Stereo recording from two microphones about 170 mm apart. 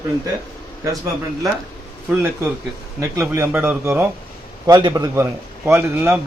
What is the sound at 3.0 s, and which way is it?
A man's voice, 15° right (ahead or behind).